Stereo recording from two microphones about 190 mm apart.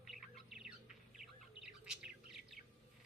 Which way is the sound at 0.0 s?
Centre (ahead or behind).